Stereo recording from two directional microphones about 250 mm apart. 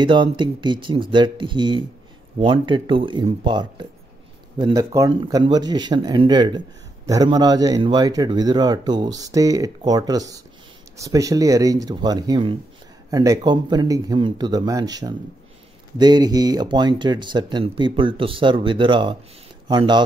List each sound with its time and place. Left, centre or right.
0.0 s speech: centre